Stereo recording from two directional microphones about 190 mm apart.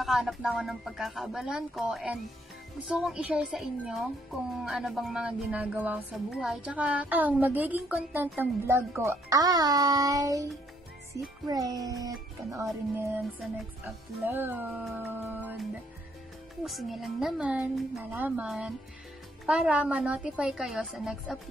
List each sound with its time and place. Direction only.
0.0 s a child's voice: centre (ahead or behind); by 12.6 s 20° right (ahead or behind)
13.8 s speech: 10° right (ahead or behind)
16.6 s speech: centre (ahead or behind)